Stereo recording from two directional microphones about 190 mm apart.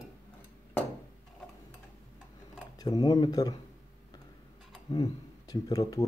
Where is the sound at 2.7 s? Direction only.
20° left (ahead or behind).